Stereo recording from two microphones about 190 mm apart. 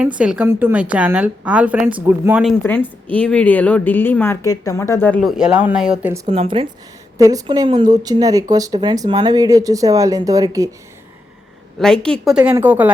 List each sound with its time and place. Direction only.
0.2 s a woman's voice: 5° right (ahead or behind)
3.1 s a woman's voice: 5° left (ahead or behind)
5.4 s a woman's voice: 5° right (ahead or behind)
6.2 s speech: 30° right (ahead or behind)
7.2 s speech: 20° right (ahead or behind)
11.8 s a woman's voice: 5° left (ahead or behind)